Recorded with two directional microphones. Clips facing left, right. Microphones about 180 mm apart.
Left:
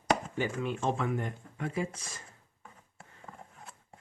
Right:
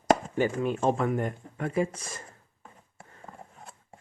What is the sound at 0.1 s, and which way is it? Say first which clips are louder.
Speech: right 6 dB; 45° right (ahead or behind).